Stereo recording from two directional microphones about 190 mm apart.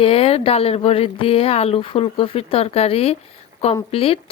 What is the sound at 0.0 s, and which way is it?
Speech, 30° left (ahead or behind).